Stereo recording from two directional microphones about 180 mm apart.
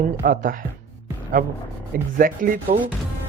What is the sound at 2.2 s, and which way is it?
Speech, 50° right (ahead or behind).